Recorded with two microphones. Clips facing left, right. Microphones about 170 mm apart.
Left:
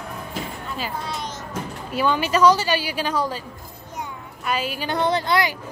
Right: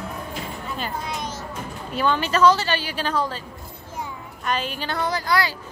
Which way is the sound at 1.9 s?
10° left (ahead or behind).